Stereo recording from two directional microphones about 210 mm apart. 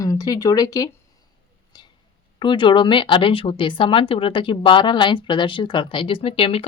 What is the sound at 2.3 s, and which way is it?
Speech, 20° left (ahead or behind).